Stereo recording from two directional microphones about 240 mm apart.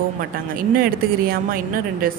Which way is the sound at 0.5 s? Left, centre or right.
Right.